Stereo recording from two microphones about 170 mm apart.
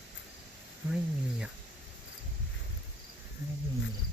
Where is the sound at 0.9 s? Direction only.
5° right (ahead or behind).